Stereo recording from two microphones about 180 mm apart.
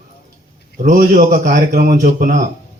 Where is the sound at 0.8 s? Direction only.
45° right (ahead or behind).